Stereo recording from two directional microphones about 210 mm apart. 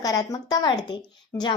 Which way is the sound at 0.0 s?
15° left (ahead or behind).